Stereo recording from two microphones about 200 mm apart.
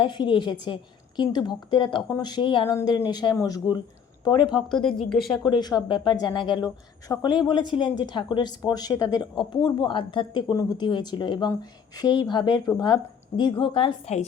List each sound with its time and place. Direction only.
0.0 s a woman's voice: 25° left (ahead or behind)
4.5 s speech: 5° left (ahead or behind)
5.4 s speech: 20° left (ahead or behind)